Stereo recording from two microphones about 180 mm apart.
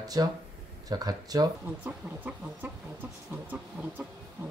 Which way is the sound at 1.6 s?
10° right (ahead or behind).